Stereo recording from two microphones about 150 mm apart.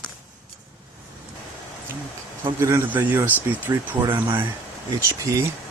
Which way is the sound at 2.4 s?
15° right (ahead or behind).